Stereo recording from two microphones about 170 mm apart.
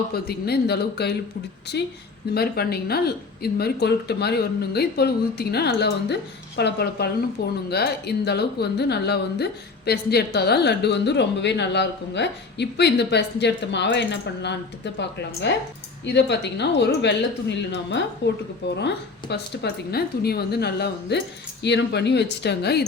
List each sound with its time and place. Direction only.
0.1 s speech: 65° left (ahead or behind)
2.3 s speech: 65° left (ahead or behind); by 18.4 s 90° left
19.3 s speech: 70° left (ahead or behind)
21.6 s speech: 85° left